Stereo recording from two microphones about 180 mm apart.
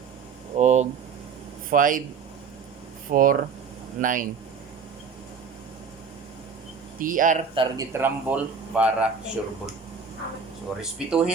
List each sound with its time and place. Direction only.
0.5 s speech: 40° right (ahead or behind)
1.7 s speech: 50° right (ahead or behind)
3.1 s speech: 50° right (ahead or behind)
7.0 s speech: 50° right (ahead or behind)
7.5 s a man's voice: 25° right (ahead or behind)
7.9 s speech: 10° right (ahead or behind)
10.8 s speech: 5° right (ahead or behind)